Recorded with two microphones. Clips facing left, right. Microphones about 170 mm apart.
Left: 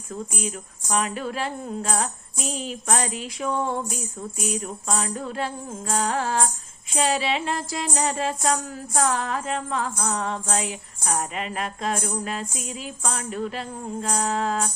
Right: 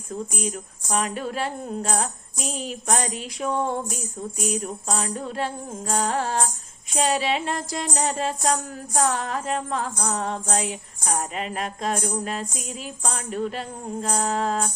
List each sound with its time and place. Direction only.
0.9 s music: 40° right (ahead or behind)
5.9 s music: 40° right (ahead or behind)